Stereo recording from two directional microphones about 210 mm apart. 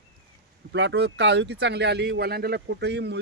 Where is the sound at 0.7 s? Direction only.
55° right (ahead or behind).